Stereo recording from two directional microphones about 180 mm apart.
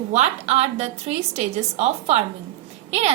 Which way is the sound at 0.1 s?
40° right (ahead or behind).